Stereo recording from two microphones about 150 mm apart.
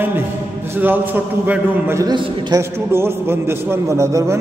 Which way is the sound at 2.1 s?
35° right (ahead or behind).